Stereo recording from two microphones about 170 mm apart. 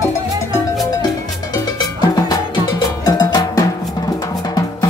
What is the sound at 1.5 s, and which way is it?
Cowbell, 20° left (ahead or behind).